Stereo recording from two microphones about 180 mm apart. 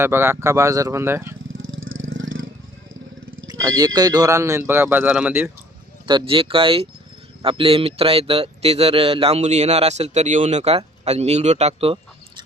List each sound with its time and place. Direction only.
0.0 s speech: 15° right (ahead or behind)
1.5 s vehicle: 90° right
3.4 s speech: 20° right (ahead or behind)
6.1 s speech: 25° right (ahead or behind)